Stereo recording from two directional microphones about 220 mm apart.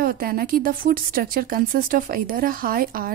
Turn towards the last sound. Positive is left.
turn(degrees=-40)  # may be behind; listen again after turning